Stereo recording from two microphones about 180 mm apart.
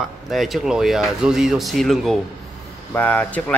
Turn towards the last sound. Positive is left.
turn(degrees=10)  # may be behind; listen again after turning